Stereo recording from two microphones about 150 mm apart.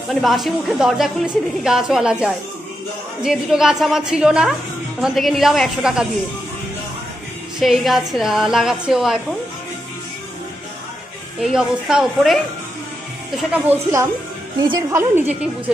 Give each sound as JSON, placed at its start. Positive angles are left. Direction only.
{"t": 0.1, "sound": "a woman's voice", "side_deg": 0}
{"t": 7.5, "sound": "a woman's voice", "side_deg": 0}
{"t": 11.3, "sound": "a woman's voice", "side_deg": -5}
{"t": 13.5, "sound": "a woman's voice", "side_deg": -15}